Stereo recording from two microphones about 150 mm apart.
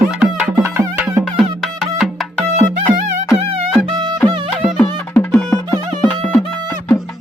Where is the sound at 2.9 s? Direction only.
50° right (ahead or behind).